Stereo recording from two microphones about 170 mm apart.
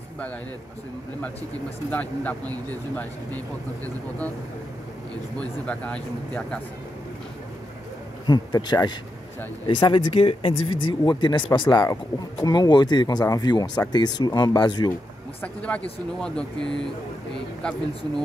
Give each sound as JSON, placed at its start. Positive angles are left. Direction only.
{"t": 1.9, "sound": "speech", "side_deg": 10}
{"t": 5.4, "sound": "speech", "side_deg": 5}
{"t": 8.3, "sound": "speech", "side_deg": 25}
{"t": 15.4, "sound": "speech", "side_deg": 5}